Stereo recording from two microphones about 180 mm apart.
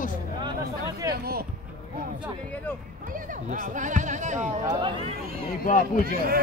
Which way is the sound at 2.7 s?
10° left (ahead or behind).